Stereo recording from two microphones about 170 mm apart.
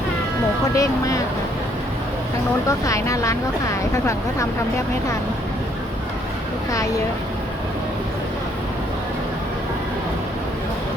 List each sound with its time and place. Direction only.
0.8 s speech: 20° left (ahead or behind)
2.6 s speech: 20° left (ahead or behind)